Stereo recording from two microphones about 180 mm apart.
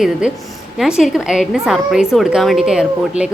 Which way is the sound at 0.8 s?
Centre (ahead or behind).